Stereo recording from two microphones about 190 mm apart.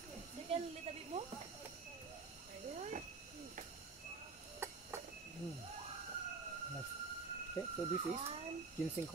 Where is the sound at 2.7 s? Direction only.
35° right (ahead or behind).